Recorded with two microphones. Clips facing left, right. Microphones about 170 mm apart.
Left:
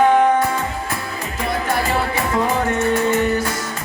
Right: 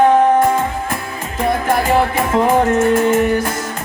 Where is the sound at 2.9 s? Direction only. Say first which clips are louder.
Right 4 dB; 50° right (ahead or behind).